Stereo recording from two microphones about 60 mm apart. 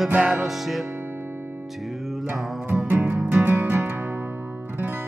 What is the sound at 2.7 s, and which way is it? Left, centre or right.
Music, right.